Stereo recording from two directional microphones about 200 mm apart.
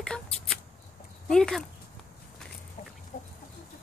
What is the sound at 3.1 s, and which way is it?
Chicken, 40° left (ahead or behind).